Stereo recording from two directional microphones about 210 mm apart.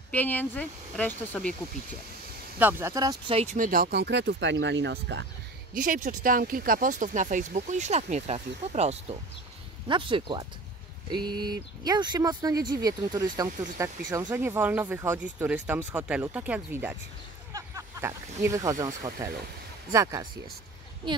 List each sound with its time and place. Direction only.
0.1 s speech: 10° left (ahead or behind)
2.6 s speech: 15° right (ahead or behind); by 5.2 s 55° right (ahead or behind)
5.8 s speech: 40° right (ahead or behind); by 20.2 s 15° right (ahead or behind)